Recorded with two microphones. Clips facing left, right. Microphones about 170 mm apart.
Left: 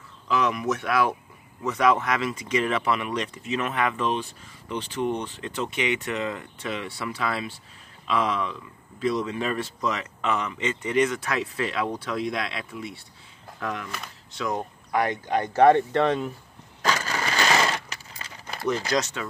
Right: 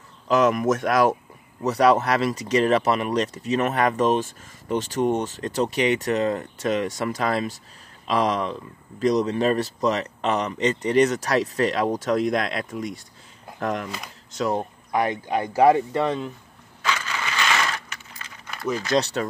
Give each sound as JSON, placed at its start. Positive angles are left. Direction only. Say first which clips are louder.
{"t": 0.3, "sound": "speech", "louder": "right 6 dB", "side_deg": -45}
{"t": 14.5, "sound": "speech", "louder": "even", "side_deg": -20}
{"t": 16.8, "sound": "a sound", "louder": "left 2 dB", "side_deg": 40}
{"t": 18.9, "sound": "speech", "louder": "right 5 dB", "side_deg": -25}